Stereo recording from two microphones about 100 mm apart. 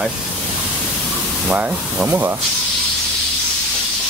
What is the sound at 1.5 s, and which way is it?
Speech, 15° right (ahead or behind).